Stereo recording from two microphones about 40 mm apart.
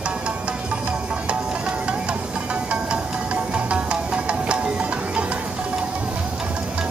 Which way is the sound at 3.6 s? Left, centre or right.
Right.